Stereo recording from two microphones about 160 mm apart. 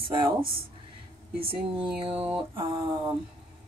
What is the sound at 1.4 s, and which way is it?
Speech, 35° right (ahead or behind).